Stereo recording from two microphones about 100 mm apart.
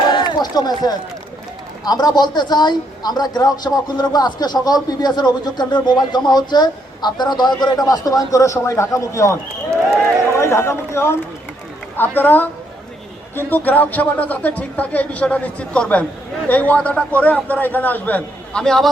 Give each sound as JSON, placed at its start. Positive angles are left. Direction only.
{"t": 0.1, "sound": "a man's voice", "side_deg": 45}